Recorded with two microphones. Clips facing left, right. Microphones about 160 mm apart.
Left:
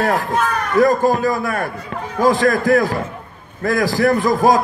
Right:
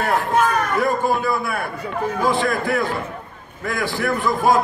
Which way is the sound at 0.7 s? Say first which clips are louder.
Left 11 dB; 40° left (ahead or behind).